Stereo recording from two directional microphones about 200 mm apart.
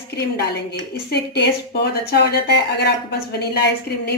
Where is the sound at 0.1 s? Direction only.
55° left (ahead or behind).